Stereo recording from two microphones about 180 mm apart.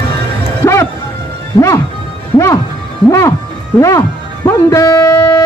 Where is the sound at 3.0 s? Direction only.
15° left (ahead or behind).